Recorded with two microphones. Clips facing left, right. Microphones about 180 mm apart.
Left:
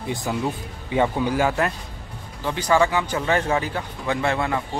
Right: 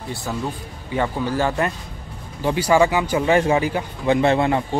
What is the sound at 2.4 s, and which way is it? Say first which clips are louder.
Speech: right 3 dB; 10° right (ahead or behind).